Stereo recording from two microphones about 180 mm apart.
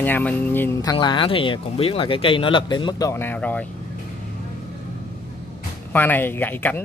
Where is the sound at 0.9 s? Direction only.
30° left (ahead or behind); by 3.6 s 10° left (ahead or behind).